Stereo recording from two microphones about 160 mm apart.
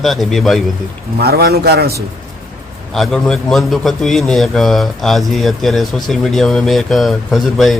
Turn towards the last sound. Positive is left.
turn(degrees=0)  # may be behind; listen again after turning